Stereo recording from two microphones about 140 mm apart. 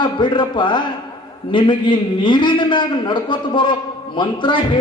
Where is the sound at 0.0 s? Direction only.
35° left (ahead or behind).